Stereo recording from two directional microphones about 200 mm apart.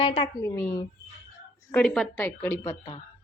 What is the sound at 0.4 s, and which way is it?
Speech, 15° left (ahead or behind).